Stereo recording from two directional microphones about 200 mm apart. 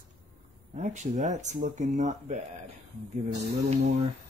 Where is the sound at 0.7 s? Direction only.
35° right (ahead or behind).